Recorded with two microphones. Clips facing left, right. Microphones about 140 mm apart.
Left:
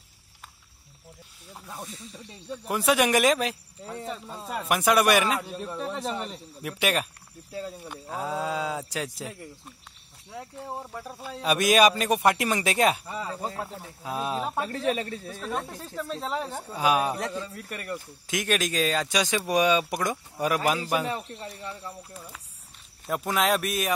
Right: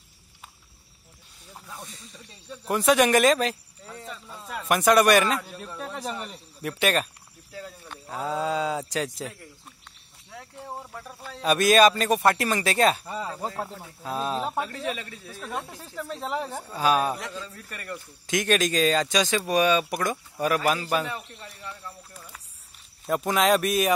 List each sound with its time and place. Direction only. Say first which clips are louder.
1.5 s a man's voice: left 2 dB; 5° left (ahead or behind)
3.8 s speech: left 5 dB; 30° left (ahead or behind)
4.6 s a man's voice: right 3 dB; 10° left (ahead or behind)
10.3 s a man's voice: left 2 dB; 15° left (ahead or behind)
14.0 s a man's voice: right 1 dB; 10° left (ahead or behind)
14.6 s a man's voice: left 3 dB; 35° left (ahead or behind)
15.4 s speech: left 1 dB; 10° right (ahead or behind)
16.6 s a man's voice: right 1 dB; 15° left (ahead or behind)
21.0 s a man's voice: left 3 dB; 35° left (ahead or behind)
21.6 s speech: left 3 dB; 20° left (ahead or behind)
23.0 s speech: right 3 dB; 5° left (ahead or behind)